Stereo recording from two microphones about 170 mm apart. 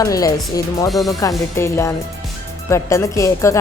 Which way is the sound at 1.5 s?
15° left (ahead or behind).